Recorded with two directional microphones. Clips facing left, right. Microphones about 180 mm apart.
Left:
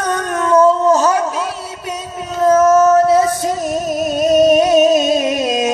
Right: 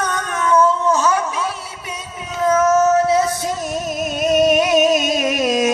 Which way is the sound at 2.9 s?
40° left (ahead or behind).